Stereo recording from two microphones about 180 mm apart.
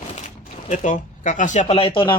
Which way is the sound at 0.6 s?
45° left (ahead or behind).